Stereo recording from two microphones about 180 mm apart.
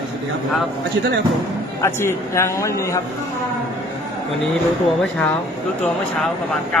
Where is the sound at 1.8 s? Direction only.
15° left (ahead or behind).